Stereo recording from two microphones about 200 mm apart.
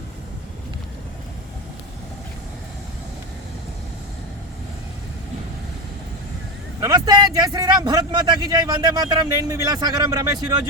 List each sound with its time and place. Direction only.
6.7 s speech: 20° right (ahead or behind)